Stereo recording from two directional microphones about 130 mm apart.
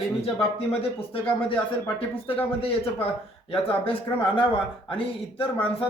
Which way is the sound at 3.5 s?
45° left (ahead or behind).